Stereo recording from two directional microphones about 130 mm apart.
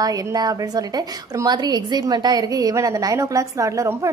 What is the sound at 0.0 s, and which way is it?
A woman's voice, 30° right (ahead or behind).